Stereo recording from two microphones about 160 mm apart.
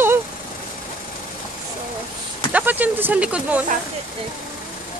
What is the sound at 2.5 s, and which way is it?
Speech, 10° right (ahead or behind).